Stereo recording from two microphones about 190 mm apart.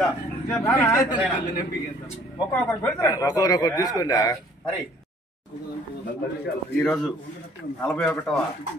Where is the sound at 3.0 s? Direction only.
20° left (ahead or behind).